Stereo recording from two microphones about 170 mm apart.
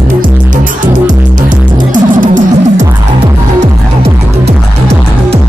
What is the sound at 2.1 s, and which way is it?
Music, 50° right (ahead or behind).